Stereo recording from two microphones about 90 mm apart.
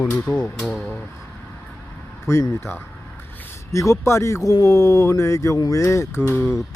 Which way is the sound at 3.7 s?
35° left (ahead or behind).